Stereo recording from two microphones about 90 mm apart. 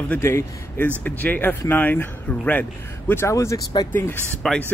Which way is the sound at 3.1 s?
30° left (ahead or behind).